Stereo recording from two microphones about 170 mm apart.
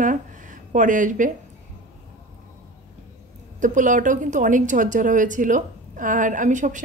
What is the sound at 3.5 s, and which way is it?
Speech, 50° right (ahead or behind).